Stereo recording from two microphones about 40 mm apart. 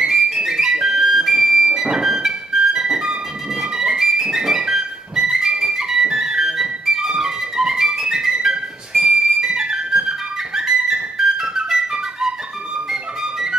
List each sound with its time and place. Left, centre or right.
0.0 s music: centre
3.7 s flute: centre
4.4 s music: centre
12.9 s flute: centre